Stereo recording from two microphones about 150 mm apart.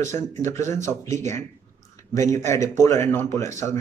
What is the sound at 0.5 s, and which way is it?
Speech, 20° left (ahead or behind).